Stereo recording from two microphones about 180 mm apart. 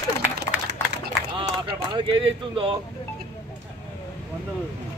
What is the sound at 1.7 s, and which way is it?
Speech, 25° right (ahead or behind).